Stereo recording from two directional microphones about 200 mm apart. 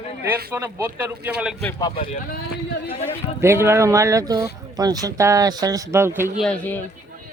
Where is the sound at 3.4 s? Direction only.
15° right (ahead or behind).